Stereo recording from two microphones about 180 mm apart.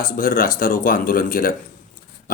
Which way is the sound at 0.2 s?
50° left (ahead or behind).